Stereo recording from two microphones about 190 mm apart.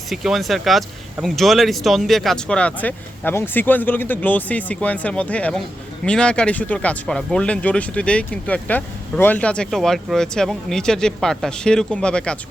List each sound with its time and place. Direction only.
0.1 s speech: centre (ahead or behind)